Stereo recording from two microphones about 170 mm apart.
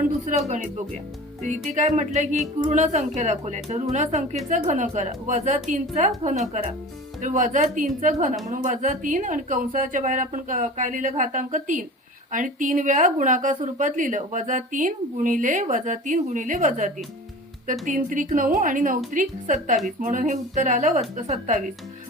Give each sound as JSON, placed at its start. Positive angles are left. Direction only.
{"t": 0.3, "sound": "a woman's voice", "side_deg": -40}